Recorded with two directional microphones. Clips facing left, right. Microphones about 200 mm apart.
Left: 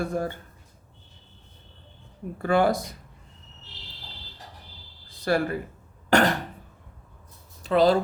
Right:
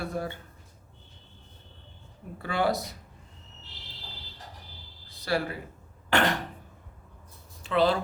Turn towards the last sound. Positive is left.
turn(degrees=40)  # may be behind; listen again after turning